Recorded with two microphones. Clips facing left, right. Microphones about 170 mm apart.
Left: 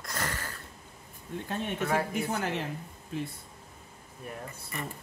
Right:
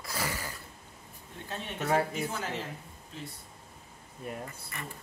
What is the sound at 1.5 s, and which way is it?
Speech, 55° left (ahead or behind).